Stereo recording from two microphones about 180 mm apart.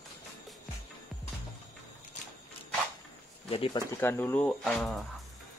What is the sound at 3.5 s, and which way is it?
Speech, 25° left (ahead or behind).